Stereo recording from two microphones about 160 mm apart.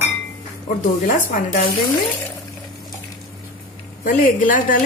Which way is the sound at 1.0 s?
60° left (ahead or behind).